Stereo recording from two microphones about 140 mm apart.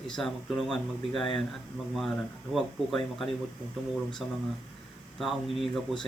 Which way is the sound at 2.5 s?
5° left (ahead or behind).